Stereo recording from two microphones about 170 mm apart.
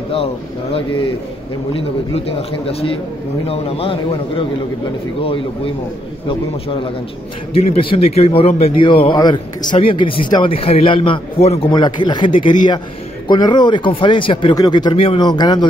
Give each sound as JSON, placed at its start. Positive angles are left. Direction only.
{"t": 0.1, "sound": "a man's voice", "side_deg": 35}
{"t": 6.2, "sound": "a man's voice", "side_deg": 30}